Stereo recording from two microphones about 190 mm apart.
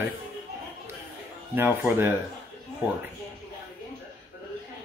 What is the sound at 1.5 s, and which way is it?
Speech, 10° right (ahead or behind).